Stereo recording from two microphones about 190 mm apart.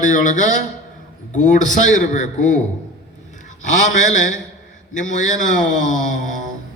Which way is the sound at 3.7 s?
40° left (ahead or behind).